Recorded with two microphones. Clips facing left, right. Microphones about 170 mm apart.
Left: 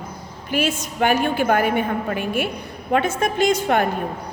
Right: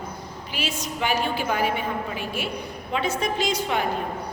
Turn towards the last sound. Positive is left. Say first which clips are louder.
# left 7 dB
turn(degrees=55)  # may be behind; listen again after turning